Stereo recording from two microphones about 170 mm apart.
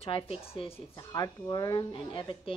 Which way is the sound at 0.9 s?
25° left (ahead or behind).